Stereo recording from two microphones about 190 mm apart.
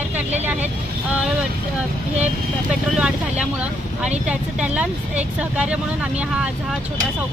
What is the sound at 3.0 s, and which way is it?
Speech, 5° right (ahead or behind).